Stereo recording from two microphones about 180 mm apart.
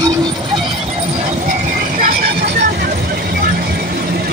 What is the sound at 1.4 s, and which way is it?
Vehicle, 50° right (ahead or behind).